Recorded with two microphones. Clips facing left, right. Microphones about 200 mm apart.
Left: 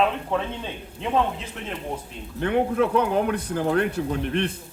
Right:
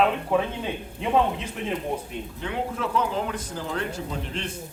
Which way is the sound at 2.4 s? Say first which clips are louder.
Left 9 dB; 60° left (ahead or behind).